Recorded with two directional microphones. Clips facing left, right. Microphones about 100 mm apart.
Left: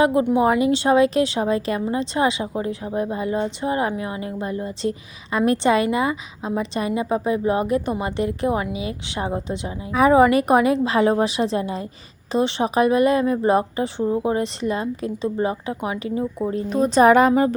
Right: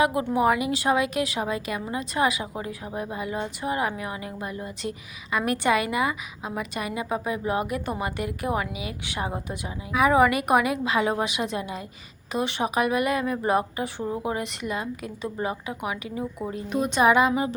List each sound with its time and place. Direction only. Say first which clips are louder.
0.0 s a woman's voice: left 5 dB; 30° left (ahead or behind); by 17.5 s 50° left (ahead or behind)